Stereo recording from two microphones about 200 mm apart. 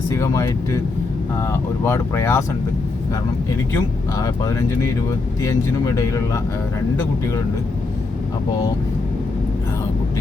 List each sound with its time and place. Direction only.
0.1 s speech: 15° left (ahead or behind)
5.4 s speech: 15° left (ahead or behind)